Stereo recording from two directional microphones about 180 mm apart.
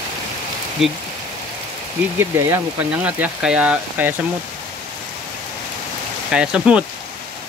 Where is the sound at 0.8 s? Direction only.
Centre (ahead or behind).